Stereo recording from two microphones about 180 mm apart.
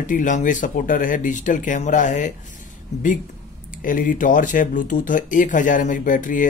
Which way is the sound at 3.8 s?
50° left (ahead or behind).